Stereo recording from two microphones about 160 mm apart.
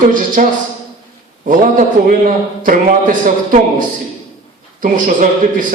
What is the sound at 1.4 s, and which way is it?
A man's voice, 55° right (ahead or behind).